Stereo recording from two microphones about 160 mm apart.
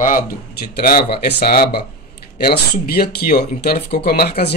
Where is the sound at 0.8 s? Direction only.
70° left (ahead or behind).